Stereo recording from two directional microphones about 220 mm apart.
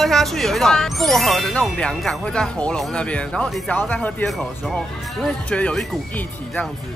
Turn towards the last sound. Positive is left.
turn(degrees=5)  # may be behind; listen again after turning